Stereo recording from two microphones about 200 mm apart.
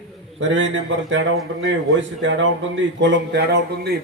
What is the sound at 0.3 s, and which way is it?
A man's voice, 70° right (ahead or behind).